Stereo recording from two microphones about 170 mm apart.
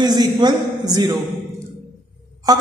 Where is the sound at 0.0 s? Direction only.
25° right (ahead or behind).